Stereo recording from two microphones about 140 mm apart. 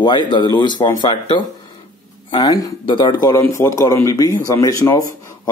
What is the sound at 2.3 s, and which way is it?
Speech, 30° left (ahead or behind).